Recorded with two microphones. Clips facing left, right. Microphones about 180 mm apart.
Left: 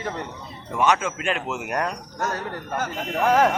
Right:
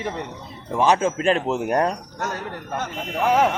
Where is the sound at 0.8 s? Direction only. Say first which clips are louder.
Right 3 dB; 30° right (ahead or behind).